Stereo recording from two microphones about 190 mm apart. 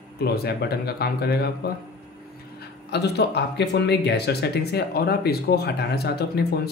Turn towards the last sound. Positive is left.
turn(degrees=55)  # may be behind; listen again after turning